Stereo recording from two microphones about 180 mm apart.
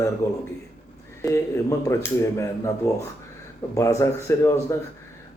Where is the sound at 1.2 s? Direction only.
15° left (ahead or behind).